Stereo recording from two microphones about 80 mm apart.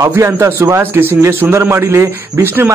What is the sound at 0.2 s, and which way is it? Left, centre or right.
A man's voice, right.